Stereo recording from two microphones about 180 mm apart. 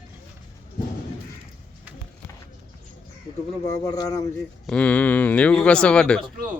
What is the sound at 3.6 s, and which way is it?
Speech, 20° left (ahead or behind).